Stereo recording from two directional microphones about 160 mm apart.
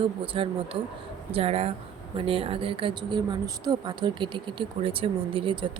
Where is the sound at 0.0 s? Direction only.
35° right (ahead or behind).